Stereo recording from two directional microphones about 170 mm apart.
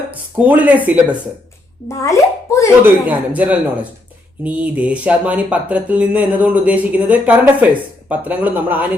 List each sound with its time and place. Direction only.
0.1 s speech: 10° right (ahead or behind)
1.9 s a child's voice: 20° left (ahead or behind)
2.8 s speech: 10° right (ahead or behind)